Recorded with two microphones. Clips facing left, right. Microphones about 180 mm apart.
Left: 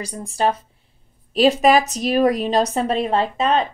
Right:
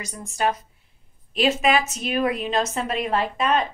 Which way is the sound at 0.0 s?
35° left (ahead or behind).